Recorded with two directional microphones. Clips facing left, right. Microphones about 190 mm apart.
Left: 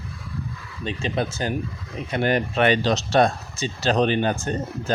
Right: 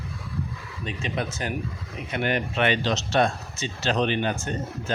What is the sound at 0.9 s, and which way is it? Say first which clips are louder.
Speech: left 4 dB; 30° left (ahead or behind).